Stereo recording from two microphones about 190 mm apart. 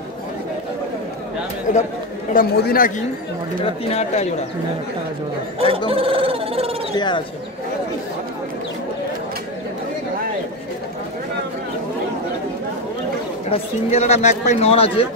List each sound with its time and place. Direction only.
1.7 s speech: 40° left (ahead or behind)
3.9 s speech: 35° left (ahead or behind)
5.9 s a sound: 30° right (ahead or behind)
7.0 s speech: 25° left (ahead or behind)
13.5 s speech: 35° left (ahead or behind)